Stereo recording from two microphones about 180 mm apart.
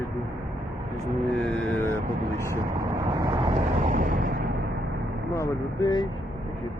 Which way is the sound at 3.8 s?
45° right (ahead or behind).